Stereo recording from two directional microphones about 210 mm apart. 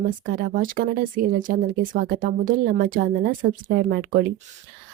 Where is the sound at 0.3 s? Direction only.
45° right (ahead or behind).